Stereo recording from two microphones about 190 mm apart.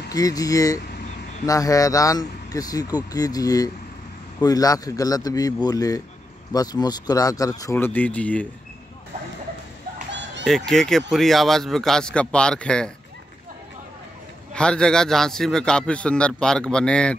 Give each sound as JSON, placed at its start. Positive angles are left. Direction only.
{"t": 0.1, "sound": "speech", "side_deg": 20}
{"t": 10.4, "sound": "a man's voice", "side_deg": 0}
{"t": 14.5, "sound": "a man's voice", "side_deg": 5}